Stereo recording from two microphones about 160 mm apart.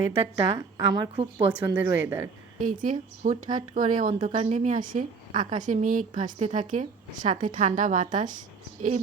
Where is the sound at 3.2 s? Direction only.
50° right (ahead or behind).